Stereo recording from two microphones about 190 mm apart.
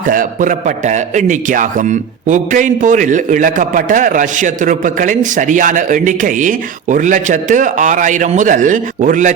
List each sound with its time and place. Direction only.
0.1 s a man's voice: 45° right (ahead or behind)